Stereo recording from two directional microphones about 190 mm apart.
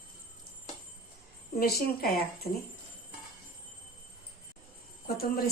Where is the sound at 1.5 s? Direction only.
55° left (ahead or behind).